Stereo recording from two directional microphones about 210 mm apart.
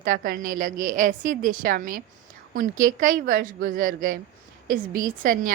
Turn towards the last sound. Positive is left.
turn(degrees=-40)  # may be behind; listen again after turning